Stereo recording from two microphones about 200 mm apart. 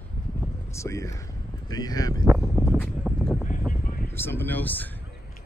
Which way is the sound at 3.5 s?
40° left (ahead or behind).